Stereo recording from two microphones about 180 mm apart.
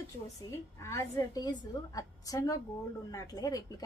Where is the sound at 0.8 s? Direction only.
15° left (ahead or behind).